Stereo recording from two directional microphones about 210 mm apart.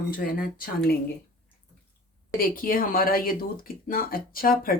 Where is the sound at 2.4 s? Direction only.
45° left (ahead or behind).